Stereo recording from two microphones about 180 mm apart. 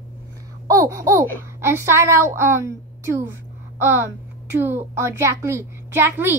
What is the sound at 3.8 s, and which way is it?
Speech, 15° right (ahead or behind).